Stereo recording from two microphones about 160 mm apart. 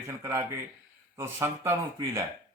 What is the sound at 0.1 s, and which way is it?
Speech, 20° right (ahead or behind).